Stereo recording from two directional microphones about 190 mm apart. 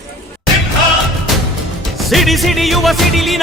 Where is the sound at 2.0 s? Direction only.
Centre (ahead or behind).